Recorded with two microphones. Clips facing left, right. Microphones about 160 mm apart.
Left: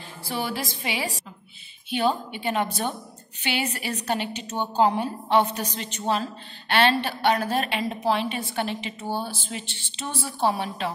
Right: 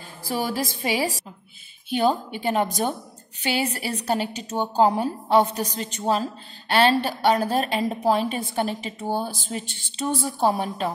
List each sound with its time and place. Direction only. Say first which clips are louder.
0.2 s a woman's voice: right 3 dB; 40° right (ahead or behind)
10.1 s a woman's voice: right 2 dB; 10° right (ahead or behind)
10.5 s speech: right 3 dB; 45° right (ahead or behind)